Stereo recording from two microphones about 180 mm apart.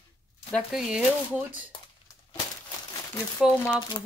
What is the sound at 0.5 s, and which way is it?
Speech, centre (ahead or behind).